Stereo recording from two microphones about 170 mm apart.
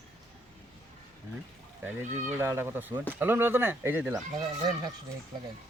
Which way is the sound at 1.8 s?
15° right (ahead or behind).